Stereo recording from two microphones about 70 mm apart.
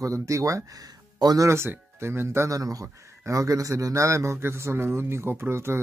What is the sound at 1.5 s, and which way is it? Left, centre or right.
A man's voice, right.